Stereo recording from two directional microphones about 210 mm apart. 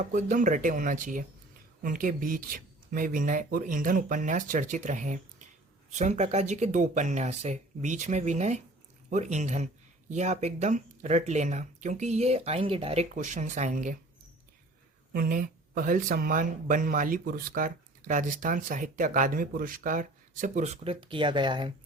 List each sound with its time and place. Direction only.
0.1 s speech: 35° right (ahead or behind)
15.1 s speech: 45° right (ahead or behind); by 21.7 s 20° right (ahead or behind)